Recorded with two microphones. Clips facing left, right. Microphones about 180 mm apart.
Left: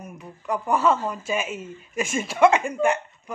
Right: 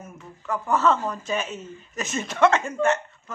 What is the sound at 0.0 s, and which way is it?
A woman's voice, 15° left (ahead or behind).